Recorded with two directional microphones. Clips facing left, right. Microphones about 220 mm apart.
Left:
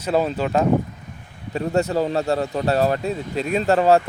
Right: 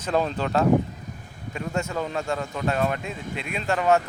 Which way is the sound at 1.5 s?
35° left (ahead or behind).